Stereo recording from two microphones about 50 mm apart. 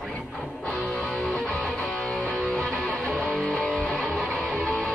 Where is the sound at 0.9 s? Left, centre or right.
Centre.